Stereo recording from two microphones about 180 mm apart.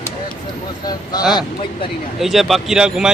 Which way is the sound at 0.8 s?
20° left (ahead or behind).